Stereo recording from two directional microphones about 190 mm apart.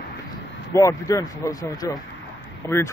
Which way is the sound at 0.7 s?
15° left (ahead or behind).